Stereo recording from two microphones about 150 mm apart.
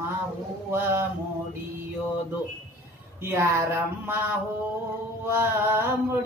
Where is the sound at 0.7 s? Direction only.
15° right (ahead or behind).